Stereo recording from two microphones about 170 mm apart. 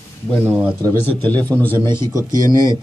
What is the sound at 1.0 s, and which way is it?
A man's voice, 10° left (ahead or behind).